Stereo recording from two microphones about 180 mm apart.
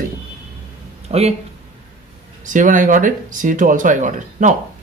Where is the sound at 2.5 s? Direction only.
45° right (ahead or behind).